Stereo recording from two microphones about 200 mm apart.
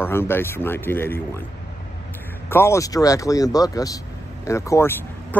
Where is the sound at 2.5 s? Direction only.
15° left (ahead or behind).